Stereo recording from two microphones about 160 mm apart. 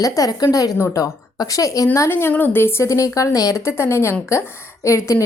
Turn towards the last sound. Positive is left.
turn(degrees=20)  # may be behind; listen again after turning